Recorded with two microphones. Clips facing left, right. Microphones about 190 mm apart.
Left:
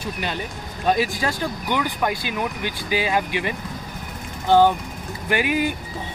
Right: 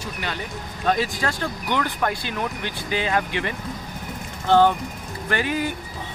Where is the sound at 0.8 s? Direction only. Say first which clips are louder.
Left 2 dB; 15° left (ahead or behind).